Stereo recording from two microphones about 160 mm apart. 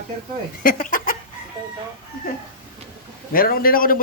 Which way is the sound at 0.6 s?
60° left (ahead or behind).